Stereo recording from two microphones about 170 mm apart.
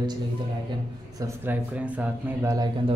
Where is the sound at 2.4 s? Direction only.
15° right (ahead or behind).